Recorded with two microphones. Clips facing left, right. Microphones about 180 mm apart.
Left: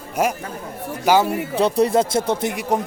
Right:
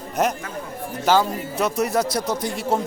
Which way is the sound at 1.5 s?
30° left (ahead or behind).